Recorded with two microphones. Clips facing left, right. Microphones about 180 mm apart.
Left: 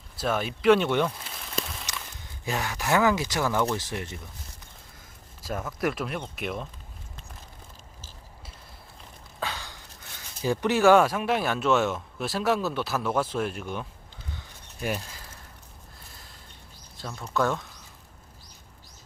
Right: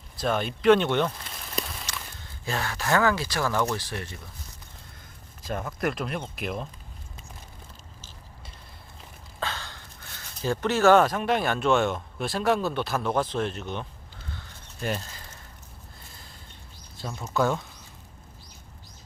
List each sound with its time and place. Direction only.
0.2 s speech: 5° left (ahead or behind)
2.2 s speech: 15° left (ahead or behind)
5.5 s speech: 5° left (ahead or behind)
9.4 s a sound: 15° left (ahead or behind)
10.4 s speech: 15° left (ahead or behind)
14.3 s a sound: 15° left (ahead or behind)
17.0 s speech: 10° right (ahead or behind)